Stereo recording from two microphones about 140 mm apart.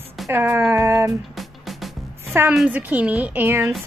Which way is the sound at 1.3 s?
Centre (ahead or behind).